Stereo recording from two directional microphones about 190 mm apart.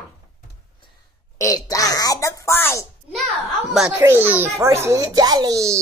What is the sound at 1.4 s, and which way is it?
Speech, 20° left (ahead or behind).